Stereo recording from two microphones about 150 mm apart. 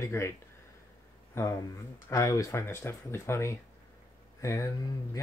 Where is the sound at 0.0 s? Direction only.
20° left (ahead or behind).